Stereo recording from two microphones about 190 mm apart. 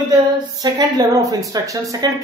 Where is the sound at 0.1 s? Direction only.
20° right (ahead or behind).